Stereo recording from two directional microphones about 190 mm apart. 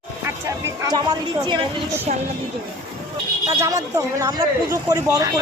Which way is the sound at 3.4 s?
15° right (ahead or behind).